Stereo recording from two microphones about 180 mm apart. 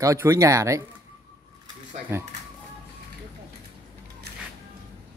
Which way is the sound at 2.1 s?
15° right (ahead or behind).